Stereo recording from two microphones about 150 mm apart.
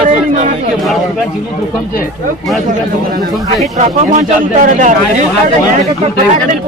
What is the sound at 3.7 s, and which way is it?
Speech, 50° right (ahead or behind).